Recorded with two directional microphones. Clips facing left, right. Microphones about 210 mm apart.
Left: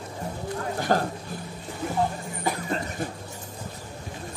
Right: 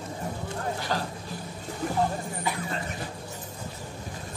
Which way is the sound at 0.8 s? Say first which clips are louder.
Left 11 dB; 50° left (ahead or behind).